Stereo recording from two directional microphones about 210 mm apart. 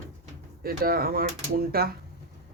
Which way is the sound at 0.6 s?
45° right (ahead or behind).